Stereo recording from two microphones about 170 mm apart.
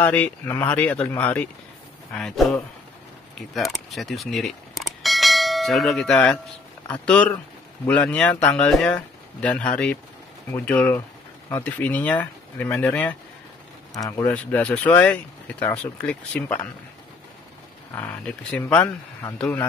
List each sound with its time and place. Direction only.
0.0 s speech: 10° left (ahead or behind)
3.3 s a sound: centre (ahead or behind)
6.9 s speech: 5° left (ahead or behind)
14.3 s speech: 10° left (ahead or behind)
17.9 s speech: 5° left (ahead or behind)